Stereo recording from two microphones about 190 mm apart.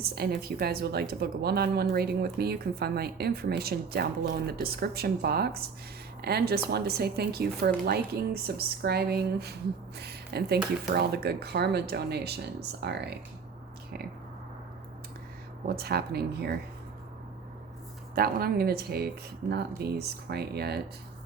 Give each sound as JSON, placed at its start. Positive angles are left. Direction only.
{"t": 0.0, "sound": "a woman's voice", "side_deg": -55}
{"t": 15.6, "sound": "a woman's voice", "side_deg": -55}
{"t": 18.1, "sound": "a woman's voice", "side_deg": -50}